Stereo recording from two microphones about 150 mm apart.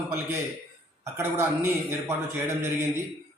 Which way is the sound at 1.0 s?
15° right (ahead or behind).